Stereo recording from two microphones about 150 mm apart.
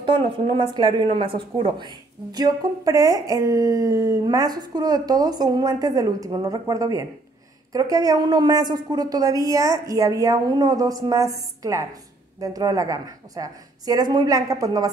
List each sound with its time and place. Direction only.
0.0 s a woman's voice: 35° right (ahead or behind)